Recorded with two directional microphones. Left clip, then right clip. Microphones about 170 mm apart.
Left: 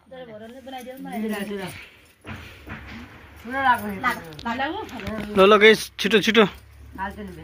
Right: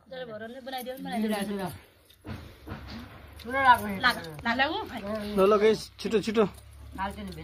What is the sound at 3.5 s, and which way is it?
Speech, 40° right (ahead or behind).